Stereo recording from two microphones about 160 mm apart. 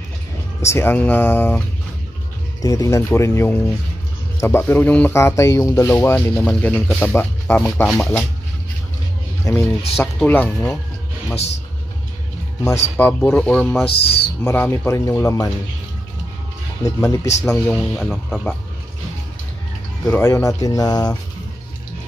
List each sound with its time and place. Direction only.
0.6 s speech: 15° left (ahead or behind)
2.6 s speech: 20° left (ahead or behind); by 8.0 s 5° left (ahead or behind)
8.0 s speech: 15° left (ahead or behind)
9.4 s speech: 10° left (ahead or behind)
12.9 s speech: 10° left (ahead or behind)
14.0 s speech: 90° left
14.4 s speech: 10° left (ahead or behind)
16.8 s speech: 20° left (ahead or behind)
17.5 s speech: 10° left (ahead or behind)
20.1 s speech: 15° left (ahead or behind)